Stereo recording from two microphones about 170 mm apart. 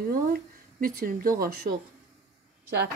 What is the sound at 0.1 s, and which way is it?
Speech, 60° right (ahead or behind).